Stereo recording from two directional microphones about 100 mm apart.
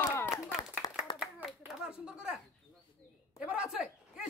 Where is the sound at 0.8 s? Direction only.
40° left (ahead or behind).